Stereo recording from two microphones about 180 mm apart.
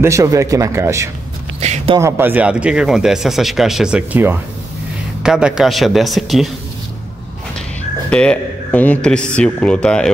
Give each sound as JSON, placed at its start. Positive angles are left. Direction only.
{"t": 0.0, "sound": "speech", "side_deg": -15}
{"t": 1.6, "sound": "a man's voice", "side_deg": -35}
{"t": 2.0, "sound": "speech", "side_deg": -15}
{"t": 8.1, "sound": "speech", "side_deg": 5}